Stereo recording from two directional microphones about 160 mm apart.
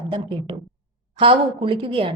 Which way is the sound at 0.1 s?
30° right (ahead or behind).